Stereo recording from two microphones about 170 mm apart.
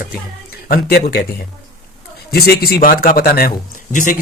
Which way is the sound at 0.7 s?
65° left (ahead or behind).